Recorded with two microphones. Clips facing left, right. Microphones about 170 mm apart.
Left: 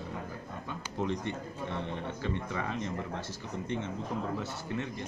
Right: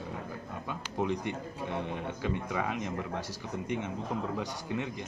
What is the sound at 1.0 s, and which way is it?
A man's voice, 15° right (ahead or behind).